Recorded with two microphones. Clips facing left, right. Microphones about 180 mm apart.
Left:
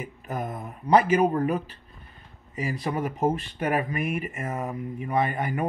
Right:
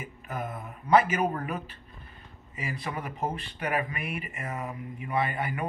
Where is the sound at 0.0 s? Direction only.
40° left (ahead or behind).